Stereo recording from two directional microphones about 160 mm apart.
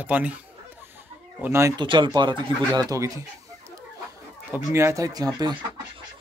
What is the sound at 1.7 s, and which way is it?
Speech, 30° right (ahead or behind).